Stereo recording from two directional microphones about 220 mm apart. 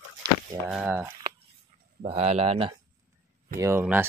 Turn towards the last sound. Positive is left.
turn(degrees=-10)  # may be behind; listen again after turning